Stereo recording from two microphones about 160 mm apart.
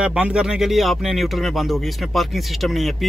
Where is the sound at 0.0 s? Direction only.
5° right (ahead or behind).